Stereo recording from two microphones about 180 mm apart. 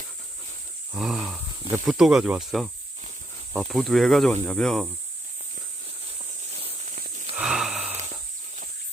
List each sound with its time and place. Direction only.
0.9 s speech: centre (ahead or behind)
6.6 s walk: 35° right (ahead or behind)
7.3 s a sound: 5° right (ahead or behind)